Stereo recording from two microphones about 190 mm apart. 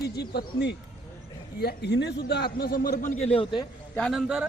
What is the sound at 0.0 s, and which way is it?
Speech, 60° left (ahead or behind).